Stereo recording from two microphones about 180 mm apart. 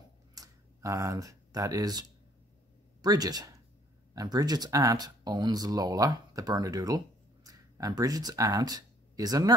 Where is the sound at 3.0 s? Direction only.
20° right (ahead or behind).